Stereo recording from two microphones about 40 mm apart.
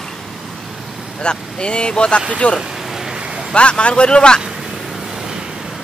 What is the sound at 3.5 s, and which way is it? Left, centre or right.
Speech, left.